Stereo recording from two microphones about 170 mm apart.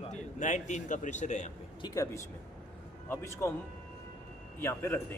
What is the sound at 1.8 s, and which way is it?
A man's voice, 20° left (ahead or behind).